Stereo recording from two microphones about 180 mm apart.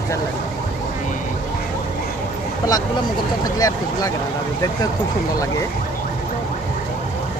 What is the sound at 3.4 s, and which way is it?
Speech, 20° left (ahead or behind).